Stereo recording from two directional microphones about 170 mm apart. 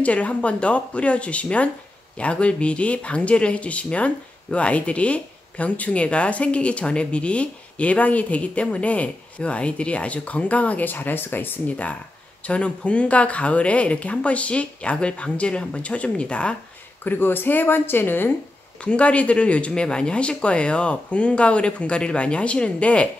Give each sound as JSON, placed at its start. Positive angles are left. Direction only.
{"t": 0.0, "sound": "speech", "side_deg": 10}